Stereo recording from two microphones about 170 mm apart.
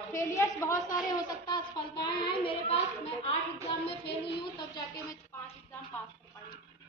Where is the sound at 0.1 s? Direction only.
15° left (ahead or behind).